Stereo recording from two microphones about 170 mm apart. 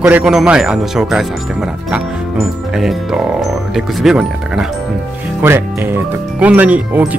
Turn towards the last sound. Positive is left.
turn(degrees=-10)  # may be behind; listen again after turning